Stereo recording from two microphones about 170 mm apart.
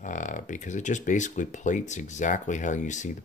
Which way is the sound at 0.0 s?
45° left (ahead or behind).